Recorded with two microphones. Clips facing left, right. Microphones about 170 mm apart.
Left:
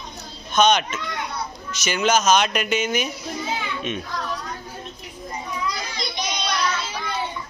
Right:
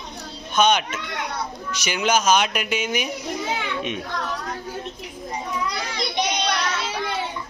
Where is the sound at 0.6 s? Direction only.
10° right (ahead or behind).